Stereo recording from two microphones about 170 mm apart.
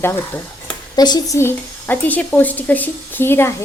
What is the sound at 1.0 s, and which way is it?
Speech, 25° left (ahead or behind).